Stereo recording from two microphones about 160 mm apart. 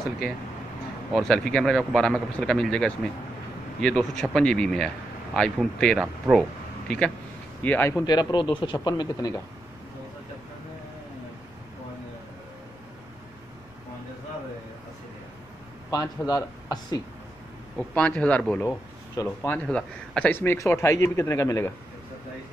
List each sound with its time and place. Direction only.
1.1 s speech: 5° left (ahead or behind)
6.3 s speech: 15° right (ahead or behind)
7.6 s speech: 10° left (ahead or behind)
8.0 s speech: 25° left (ahead or behind)
15.9 s speech: 25° left (ahead or behind)
17.7 s speech: 5° left (ahead or behind)
18.6 s speech: 15° left (ahead or behind)